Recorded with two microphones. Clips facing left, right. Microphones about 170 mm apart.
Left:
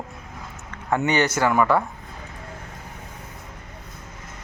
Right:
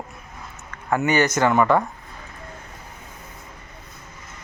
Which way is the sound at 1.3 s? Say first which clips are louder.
Right 2 dB; 10° left (ahead or behind).